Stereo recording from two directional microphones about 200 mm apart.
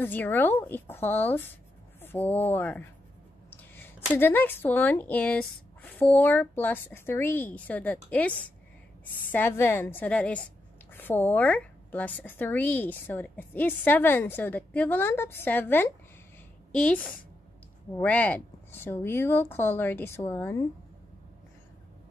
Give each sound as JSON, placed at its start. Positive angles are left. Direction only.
{"t": 0.0, "sound": "a woman's voice", "side_deg": 10}
{"t": 3.4, "sound": "a sound", "side_deg": 10}
{"t": 4.2, "sound": "a woman's voice", "side_deg": 10}